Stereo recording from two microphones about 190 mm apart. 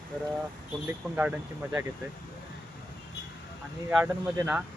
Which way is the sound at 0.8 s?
5° right (ahead or behind).